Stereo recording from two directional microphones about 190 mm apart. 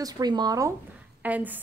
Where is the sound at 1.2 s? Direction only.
10° right (ahead or behind).